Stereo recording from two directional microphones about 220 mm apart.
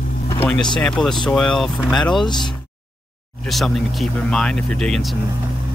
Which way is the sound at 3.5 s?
Centre (ahead or behind).